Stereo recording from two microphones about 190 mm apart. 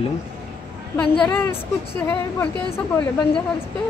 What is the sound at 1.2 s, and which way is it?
Speech, 5° left (ahead or behind).